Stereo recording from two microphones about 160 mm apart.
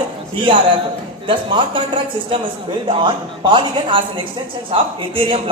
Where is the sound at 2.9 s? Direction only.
30° right (ahead or behind).